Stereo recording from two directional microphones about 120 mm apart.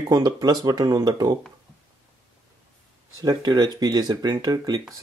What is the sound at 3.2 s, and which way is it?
Speech, 30° right (ahead or behind).